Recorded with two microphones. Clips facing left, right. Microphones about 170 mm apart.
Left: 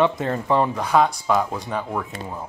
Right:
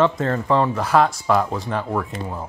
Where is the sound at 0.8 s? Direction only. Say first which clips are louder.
Right 1 dB; 5° right (ahead or behind).